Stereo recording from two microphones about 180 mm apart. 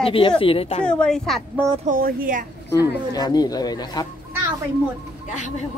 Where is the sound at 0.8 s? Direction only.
5° left (ahead or behind).